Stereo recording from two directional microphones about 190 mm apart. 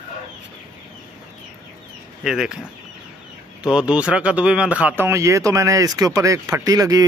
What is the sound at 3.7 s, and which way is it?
Speech, 5° right (ahead or behind).